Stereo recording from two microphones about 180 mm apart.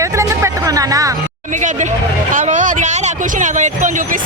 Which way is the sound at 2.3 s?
45° right (ahead or behind).